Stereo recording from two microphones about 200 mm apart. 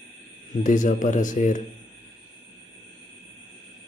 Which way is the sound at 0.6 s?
40° left (ahead or behind).